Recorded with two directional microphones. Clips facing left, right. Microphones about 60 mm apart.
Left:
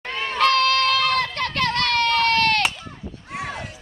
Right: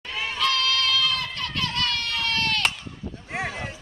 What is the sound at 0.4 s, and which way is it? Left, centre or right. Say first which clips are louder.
Run: left 7 dB; left.